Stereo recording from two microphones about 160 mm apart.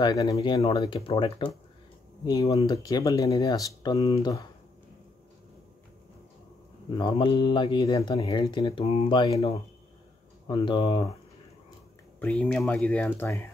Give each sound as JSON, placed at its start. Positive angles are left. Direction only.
{"t": 0.0, "sound": "speech", "side_deg": 20}
{"t": 2.2, "sound": "speech", "side_deg": 20}
{"t": 7.0, "sound": "speech", "side_deg": 30}
{"t": 10.5, "sound": "speech", "side_deg": 30}
{"t": 12.2, "sound": "speech", "side_deg": 5}